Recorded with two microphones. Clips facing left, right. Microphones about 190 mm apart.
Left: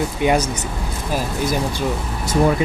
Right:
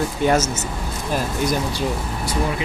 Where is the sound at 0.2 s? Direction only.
15° left (ahead or behind).